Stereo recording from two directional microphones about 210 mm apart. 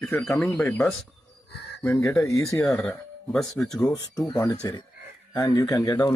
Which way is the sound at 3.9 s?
15° left (ahead or behind).